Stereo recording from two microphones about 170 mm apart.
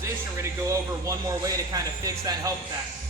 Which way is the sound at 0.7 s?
20° right (ahead or behind).